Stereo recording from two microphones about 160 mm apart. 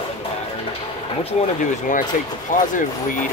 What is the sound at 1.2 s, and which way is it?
Speech, 45° left (ahead or behind).